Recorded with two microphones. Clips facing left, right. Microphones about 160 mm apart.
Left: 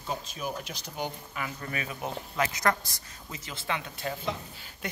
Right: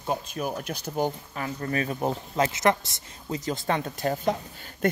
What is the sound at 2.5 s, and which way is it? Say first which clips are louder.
Speech: right 5 dB; 25° right (ahead or behind).